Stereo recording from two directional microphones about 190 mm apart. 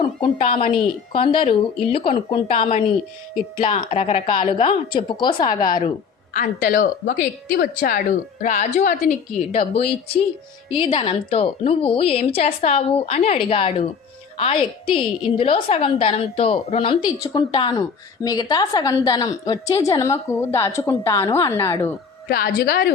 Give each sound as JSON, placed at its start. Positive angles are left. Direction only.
{"t": 0.2, "sound": "a woman's voice", "side_deg": 30}
{"t": 6.3, "sound": "speech", "side_deg": 45}
{"t": 9.5, "sound": "a woman's voice", "side_deg": 30}
{"t": 22.3, "sound": "speech", "side_deg": 55}